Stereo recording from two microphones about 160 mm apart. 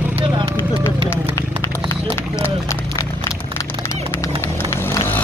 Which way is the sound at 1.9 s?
15° left (ahead or behind).